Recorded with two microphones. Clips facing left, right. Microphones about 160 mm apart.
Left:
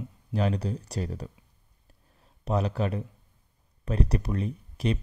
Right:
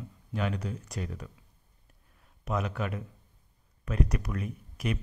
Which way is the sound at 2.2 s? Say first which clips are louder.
Left 4 dB; 35° left (ahead or behind).